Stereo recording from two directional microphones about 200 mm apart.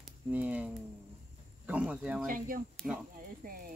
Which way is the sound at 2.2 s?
45° right (ahead or behind).